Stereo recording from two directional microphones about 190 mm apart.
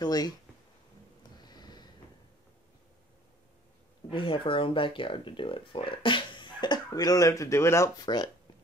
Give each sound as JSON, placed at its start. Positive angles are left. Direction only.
{"t": 0.0, "sound": "speech", "side_deg": 20}
{"t": 1.4, "sound": "a sound", "side_deg": 20}
{"t": 4.1, "sound": "speech", "side_deg": 25}